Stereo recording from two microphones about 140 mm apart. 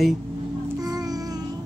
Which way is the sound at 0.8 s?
25° right (ahead or behind).